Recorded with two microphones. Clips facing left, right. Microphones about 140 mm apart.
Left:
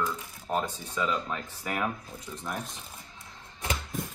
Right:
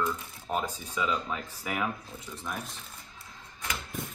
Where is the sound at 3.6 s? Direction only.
25° left (ahead or behind).